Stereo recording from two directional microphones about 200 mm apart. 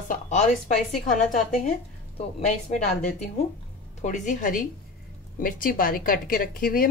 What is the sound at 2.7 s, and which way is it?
A woman's voice, 35° left (ahead or behind).